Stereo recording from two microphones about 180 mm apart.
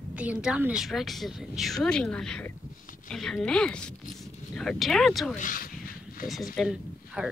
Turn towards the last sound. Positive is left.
turn(degrees=-5)  # may be behind; listen again after turning